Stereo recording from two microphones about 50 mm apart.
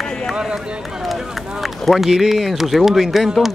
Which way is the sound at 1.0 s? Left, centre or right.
Centre.